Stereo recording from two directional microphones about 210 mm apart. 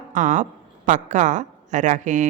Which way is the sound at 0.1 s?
35° right (ahead or behind).